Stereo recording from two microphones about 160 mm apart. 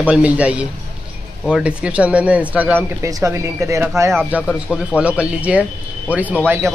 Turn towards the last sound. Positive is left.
turn(degrees=-15)  # may be behind; listen again after turning